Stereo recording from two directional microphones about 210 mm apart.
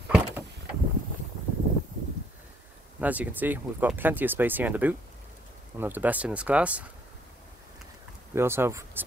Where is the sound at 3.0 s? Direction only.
5° right (ahead or behind).